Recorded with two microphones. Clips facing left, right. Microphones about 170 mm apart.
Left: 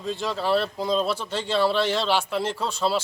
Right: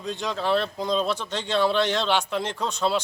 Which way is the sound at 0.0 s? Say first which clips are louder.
Left 1 dB; centre (ahead or behind).